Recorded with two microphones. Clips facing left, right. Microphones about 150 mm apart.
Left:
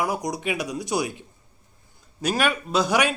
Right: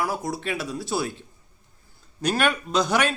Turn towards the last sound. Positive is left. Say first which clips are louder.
# left 1 dB
turn(degrees=10)  # may be behind; listen again after turning